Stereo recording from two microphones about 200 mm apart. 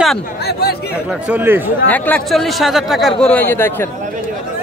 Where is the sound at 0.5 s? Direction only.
55° left (ahead or behind).